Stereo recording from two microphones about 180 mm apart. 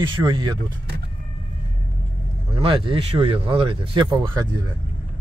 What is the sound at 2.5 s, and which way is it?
Speech, 30° right (ahead or behind).